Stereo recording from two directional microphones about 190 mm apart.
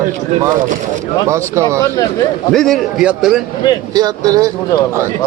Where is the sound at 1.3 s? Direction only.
15° right (ahead or behind).